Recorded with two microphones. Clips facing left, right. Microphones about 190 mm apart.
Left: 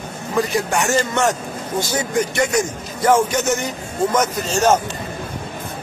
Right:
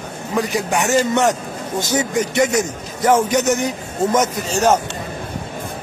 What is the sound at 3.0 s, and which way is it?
Speech, 15° right (ahead or behind).